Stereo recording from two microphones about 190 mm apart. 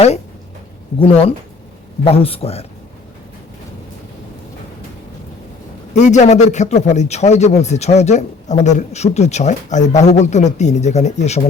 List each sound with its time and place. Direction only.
0.9 s a man's voice: 30° left (ahead or behind)
5.9 s a man's voice: 40° left (ahead or behind)